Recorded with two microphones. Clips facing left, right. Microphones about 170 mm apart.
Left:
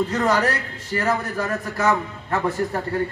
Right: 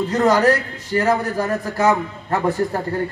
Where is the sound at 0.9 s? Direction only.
35° right (ahead or behind).